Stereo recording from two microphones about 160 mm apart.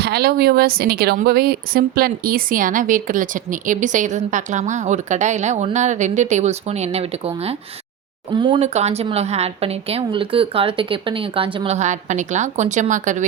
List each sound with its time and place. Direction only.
0.0 s speech: 85° right; by 8.6 s 30° right (ahead or behind)
8.6 s a woman's voice: 45° right (ahead or behind)